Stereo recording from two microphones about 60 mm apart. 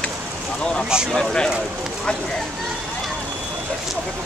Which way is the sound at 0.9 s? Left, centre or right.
Centre.